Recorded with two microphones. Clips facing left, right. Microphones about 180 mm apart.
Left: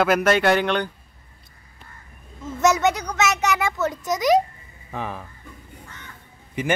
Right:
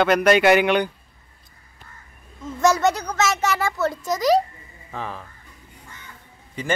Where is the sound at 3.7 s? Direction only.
20° left (ahead or behind).